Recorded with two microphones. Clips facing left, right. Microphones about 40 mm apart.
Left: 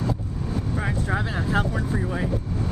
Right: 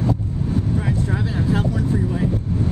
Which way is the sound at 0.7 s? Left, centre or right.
Centre.